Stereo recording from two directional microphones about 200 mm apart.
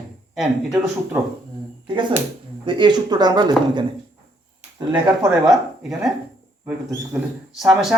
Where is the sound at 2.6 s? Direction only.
25° right (ahead or behind).